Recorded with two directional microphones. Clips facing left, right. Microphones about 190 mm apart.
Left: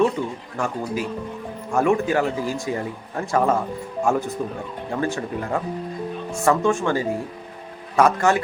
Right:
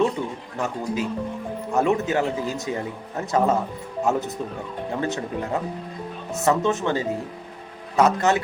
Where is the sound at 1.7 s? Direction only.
20° right (ahead or behind).